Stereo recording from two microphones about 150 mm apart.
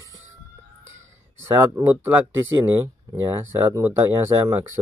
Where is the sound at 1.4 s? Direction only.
15° right (ahead or behind).